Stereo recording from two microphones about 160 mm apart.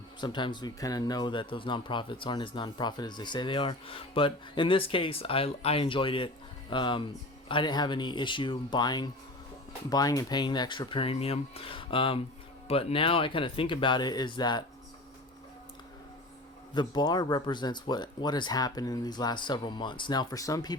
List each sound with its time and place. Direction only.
0.2 s speech: 30° left (ahead or behind)
16.7 s speech: 25° left (ahead or behind)